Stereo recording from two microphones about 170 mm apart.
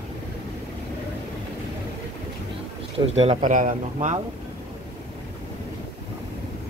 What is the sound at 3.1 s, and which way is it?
Speech, 40° right (ahead or behind).